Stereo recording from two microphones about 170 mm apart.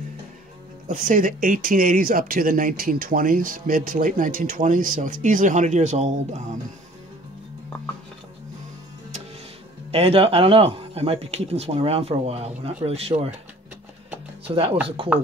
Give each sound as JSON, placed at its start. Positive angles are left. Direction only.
{"t": 0.8, "sound": "speech", "side_deg": -50}
{"t": 9.8, "sound": "speech", "side_deg": -35}
{"t": 14.5, "sound": "speech", "side_deg": -35}